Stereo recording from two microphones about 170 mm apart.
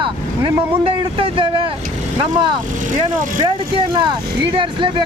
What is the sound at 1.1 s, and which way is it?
Speech, 30° right (ahead or behind).